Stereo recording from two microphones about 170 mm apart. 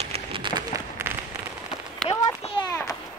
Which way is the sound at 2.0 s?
35° left (ahead or behind).